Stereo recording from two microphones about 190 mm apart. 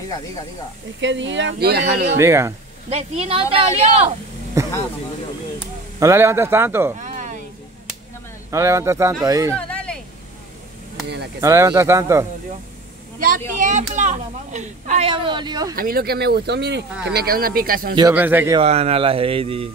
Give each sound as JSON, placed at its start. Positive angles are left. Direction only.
{"t": 1.0, "sound": "speech", "side_deg": -75}
{"t": 2.1, "sound": "speech", "side_deg": -15}
{"t": 2.9, "sound": "speech", "side_deg": -30}
{"t": 4.6, "sound": "speech", "side_deg": -15}
{"t": 5.9, "sound": "speech", "side_deg": -15}
{"t": 7.0, "sound": "a sound", "side_deg": -40}
{"t": 8.5, "sound": "speech", "side_deg": -15}
{"t": 9.6, "sound": "a sound", "side_deg": 5}
{"t": 11.4, "sound": "speech", "side_deg": -15}
{"t": 13.6, "sound": "speech", "side_deg": -40}
{"t": 15.7, "sound": "speech", "side_deg": -50}
{"t": 18.1, "sound": "speech", "side_deg": -10}
{"t": 18.6, "sound": "speech", "side_deg": -35}